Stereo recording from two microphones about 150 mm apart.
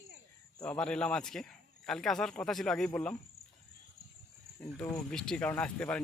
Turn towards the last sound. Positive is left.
turn(degrees=10)  # may be behind; listen again after turning